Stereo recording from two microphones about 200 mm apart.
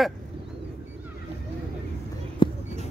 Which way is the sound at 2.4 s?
25° left (ahead or behind).